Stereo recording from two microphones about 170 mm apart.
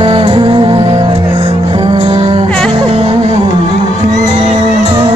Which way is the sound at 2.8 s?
35° right (ahead or behind).